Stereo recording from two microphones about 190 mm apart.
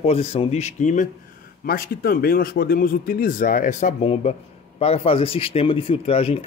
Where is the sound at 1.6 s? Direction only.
50° left (ahead or behind); by 6.4 s 30° left (ahead or behind).